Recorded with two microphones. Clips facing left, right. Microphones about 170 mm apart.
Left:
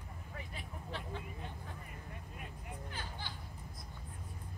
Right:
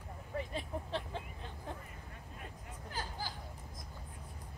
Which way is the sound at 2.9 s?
40° right (ahead or behind).